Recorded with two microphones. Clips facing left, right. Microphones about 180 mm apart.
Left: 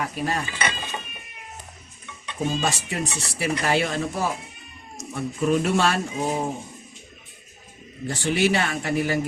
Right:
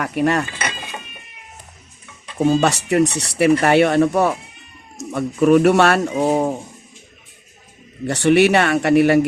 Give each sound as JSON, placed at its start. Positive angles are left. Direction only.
{"t": 0.0, "sound": "mechanisms", "side_deg": -65}
{"t": 2.5, "sound": "speech", "side_deg": -70}
{"t": 8.0, "sound": "speech", "side_deg": -70}